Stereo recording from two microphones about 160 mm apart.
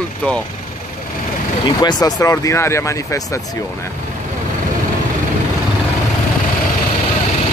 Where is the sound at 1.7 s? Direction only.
25° left (ahead or behind).